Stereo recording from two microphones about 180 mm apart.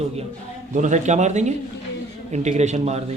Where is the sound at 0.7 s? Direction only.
40° right (ahead or behind).